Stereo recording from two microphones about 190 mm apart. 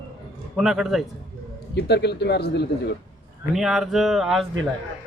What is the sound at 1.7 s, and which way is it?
Speech, 65° left (ahead or behind).